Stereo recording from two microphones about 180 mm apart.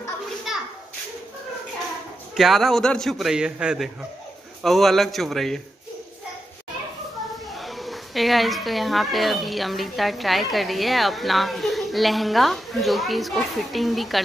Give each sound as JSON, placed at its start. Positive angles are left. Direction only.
{"t": 0.5, "sound": "children playing", "side_deg": 0}
{"t": 2.3, "sound": "a woman's voice", "side_deg": 0}
{"t": 7.5, "sound": "a woman's voice", "side_deg": 0}